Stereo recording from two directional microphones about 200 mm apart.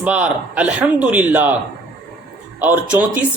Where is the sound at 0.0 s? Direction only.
5° right (ahead or behind).